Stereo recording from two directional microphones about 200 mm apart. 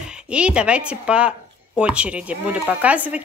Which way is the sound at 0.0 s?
5° right (ahead or behind).